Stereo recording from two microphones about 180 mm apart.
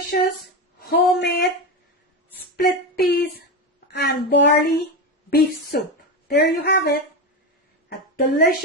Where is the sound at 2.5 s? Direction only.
55° left (ahead or behind).